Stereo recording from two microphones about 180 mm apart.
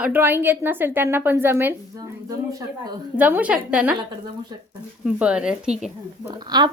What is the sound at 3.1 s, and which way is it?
Speech, 10° right (ahead or behind).